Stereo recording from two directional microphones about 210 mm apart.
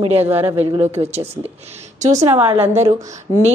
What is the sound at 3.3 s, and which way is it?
Speech, 20° left (ahead or behind).